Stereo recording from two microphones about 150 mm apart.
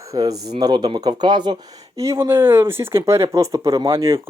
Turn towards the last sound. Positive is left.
turn(degrees=-20)  # may be behind; listen again after turning